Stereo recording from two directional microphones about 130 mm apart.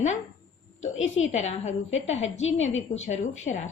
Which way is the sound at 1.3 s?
60° left (ahead or behind).